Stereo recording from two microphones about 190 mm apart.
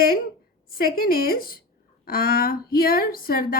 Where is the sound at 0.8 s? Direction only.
50° left (ahead or behind).